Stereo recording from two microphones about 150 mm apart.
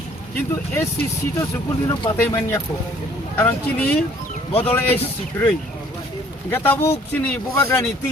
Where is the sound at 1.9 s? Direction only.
30° left (ahead or behind).